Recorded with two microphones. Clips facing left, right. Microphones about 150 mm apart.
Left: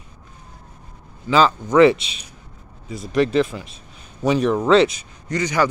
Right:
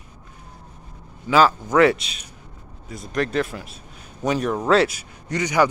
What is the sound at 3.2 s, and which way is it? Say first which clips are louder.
Speech: left 5 dB; centre (ahead or behind).